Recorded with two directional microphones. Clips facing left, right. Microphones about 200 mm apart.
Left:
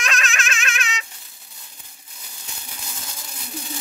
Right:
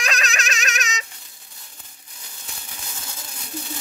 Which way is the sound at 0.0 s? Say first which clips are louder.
Even; 35° right (ahead or behind).